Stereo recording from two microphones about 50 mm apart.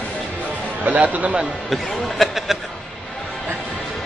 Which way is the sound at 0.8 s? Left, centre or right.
Right.